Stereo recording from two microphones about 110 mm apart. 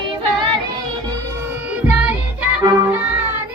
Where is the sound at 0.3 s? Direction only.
50° right (ahead or behind).